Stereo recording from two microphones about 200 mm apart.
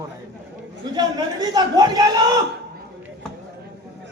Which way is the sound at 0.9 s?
20° right (ahead or behind).